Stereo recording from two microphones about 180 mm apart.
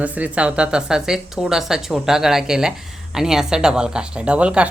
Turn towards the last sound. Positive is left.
turn(degrees=-5)  # may be behind; listen again after turning